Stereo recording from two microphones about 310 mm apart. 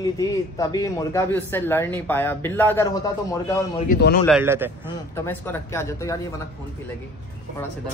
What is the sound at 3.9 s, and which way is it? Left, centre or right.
Speech, left.